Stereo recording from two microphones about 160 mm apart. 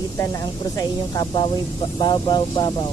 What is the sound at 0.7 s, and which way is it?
Speech, 25° left (ahead or behind).